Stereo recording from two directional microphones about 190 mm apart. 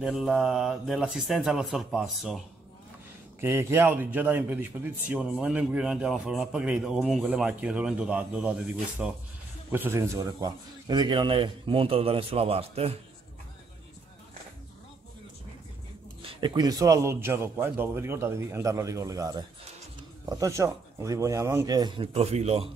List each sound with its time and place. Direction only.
0.0 s a man's voice: centre (ahead or behind)
3.3 s a man's voice: 15° right (ahead or behind); by 12.9 s 30° right (ahead or behind)
16.2 s a man's voice: 25° right (ahead or behind)